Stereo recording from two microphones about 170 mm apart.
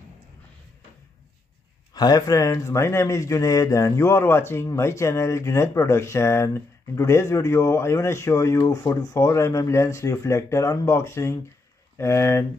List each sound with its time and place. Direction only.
2.0 s speech: 20° left (ahead or behind)